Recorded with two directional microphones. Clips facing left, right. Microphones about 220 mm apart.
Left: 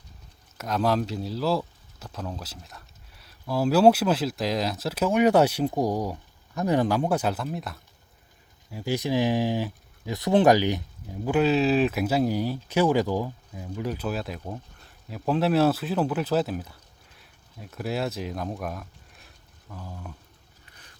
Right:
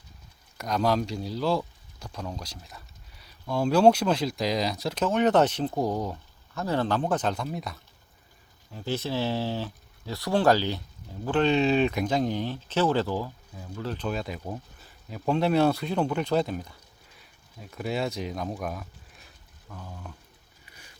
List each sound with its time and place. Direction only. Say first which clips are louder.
0.5 s speech: left 1 dB; 5° left (ahead or behind)
8.7 s speech: left 4 dB; 10° left (ahead or behind)
20.7 s boat: right 2 dB; 10° right (ahead or behind)